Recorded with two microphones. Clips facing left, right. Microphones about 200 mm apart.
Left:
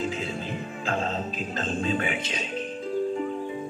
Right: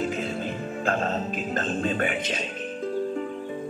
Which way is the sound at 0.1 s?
50° right (ahead or behind).